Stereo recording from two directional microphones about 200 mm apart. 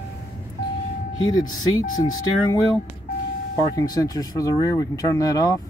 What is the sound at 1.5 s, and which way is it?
Speech, 20° left (ahead or behind).